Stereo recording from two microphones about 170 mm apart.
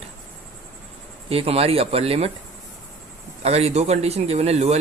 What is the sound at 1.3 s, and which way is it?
A man's voice, 35° right (ahead or behind).